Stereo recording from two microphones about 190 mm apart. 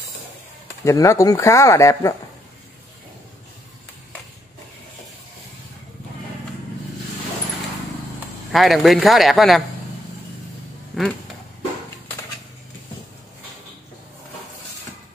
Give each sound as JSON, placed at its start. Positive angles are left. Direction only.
{"t": 0.8, "sound": "speech", "side_deg": 15}
{"t": 8.5, "sound": "speech", "side_deg": 0}
{"t": 10.9, "sound": "speech", "side_deg": 0}